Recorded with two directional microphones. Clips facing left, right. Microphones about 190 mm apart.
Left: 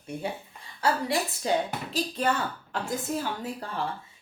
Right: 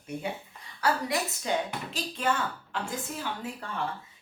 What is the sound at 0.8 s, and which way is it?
Speech, 30° left (ahead or behind).